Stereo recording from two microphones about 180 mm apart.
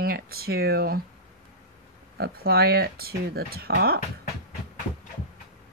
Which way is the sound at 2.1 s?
60° right (ahead or behind).